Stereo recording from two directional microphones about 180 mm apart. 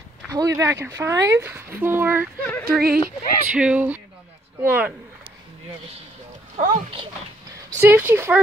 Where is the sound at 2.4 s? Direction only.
10° left (ahead or behind).